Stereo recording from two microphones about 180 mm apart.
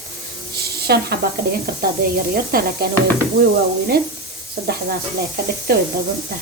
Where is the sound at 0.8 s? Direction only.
60° right (ahead or behind).